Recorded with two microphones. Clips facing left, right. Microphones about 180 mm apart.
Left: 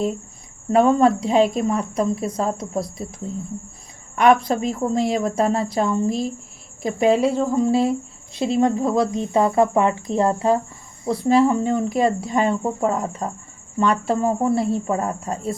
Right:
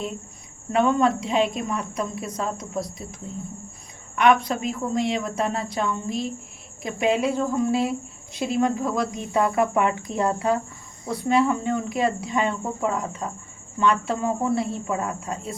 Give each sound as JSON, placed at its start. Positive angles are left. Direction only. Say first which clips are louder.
{"t": 0.7, "sound": "speech", "louder": "left 5 dB", "side_deg": 35}
{"t": 4.1, "sound": "a woman's voice", "louder": "left 3 dB", "side_deg": 35}